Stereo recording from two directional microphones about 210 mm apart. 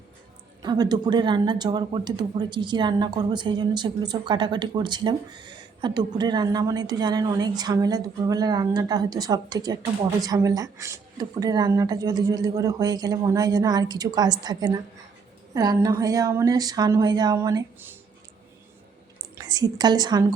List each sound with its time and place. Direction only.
0.6 s a woman's voice: 20° right (ahead or behind)
19.4 s a woman's voice: 20° right (ahead or behind)